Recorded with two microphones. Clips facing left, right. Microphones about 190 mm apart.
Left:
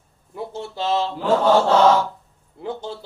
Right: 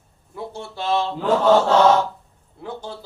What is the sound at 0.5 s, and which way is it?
Speech, 20° left (ahead or behind).